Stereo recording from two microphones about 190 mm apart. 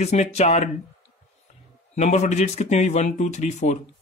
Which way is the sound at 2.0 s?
35° left (ahead or behind).